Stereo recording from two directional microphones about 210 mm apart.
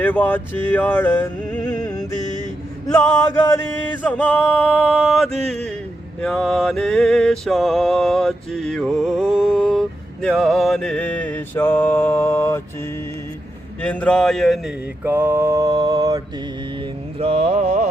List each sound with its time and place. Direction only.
0.0 s a sound: 10° left (ahead or behind)
4.0 s male singing: 5° left (ahead or behind)
6.2 s music: centre (ahead or behind)
13.8 s music: 5° left (ahead or behind)
15.0 s mantra: 10° right (ahead or behind)
17.2 s mantra: 30° right (ahead or behind)